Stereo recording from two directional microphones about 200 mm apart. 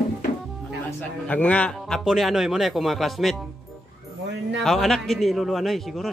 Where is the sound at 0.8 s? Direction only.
5° left (ahead or behind).